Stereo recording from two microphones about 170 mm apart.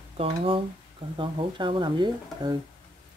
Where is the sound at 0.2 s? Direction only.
30° right (ahead or behind).